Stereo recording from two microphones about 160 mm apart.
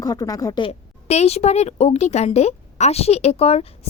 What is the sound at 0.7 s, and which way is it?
A woman's voice, 40° left (ahead or behind).